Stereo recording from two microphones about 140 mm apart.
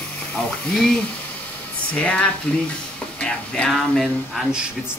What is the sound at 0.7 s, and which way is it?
Speech, centre (ahead or behind).